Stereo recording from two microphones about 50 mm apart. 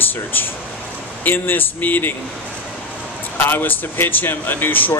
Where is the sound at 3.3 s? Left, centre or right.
Left.